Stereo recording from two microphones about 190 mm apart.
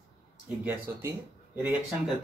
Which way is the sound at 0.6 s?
10° right (ahead or behind).